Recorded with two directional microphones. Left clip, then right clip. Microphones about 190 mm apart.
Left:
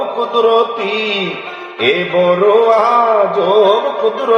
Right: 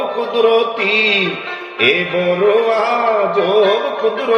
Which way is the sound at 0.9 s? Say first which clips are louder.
Right 3 dB; 40° left (ahead or behind).